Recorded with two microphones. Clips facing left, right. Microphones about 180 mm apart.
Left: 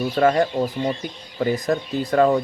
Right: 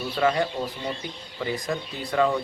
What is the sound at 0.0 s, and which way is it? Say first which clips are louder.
Speech: left 6 dB; 45° left (ahead or behind).